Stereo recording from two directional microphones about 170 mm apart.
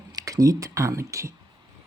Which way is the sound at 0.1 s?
20° right (ahead or behind).